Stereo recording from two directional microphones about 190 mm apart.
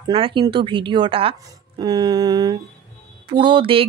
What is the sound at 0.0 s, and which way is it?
Speech, 25° right (ahead or behind).